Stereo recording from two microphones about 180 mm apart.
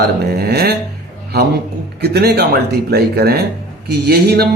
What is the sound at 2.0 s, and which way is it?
Speech, 65° right (ahead or behind).